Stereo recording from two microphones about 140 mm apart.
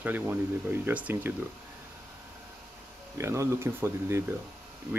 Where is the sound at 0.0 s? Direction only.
15° right (ahead or behind).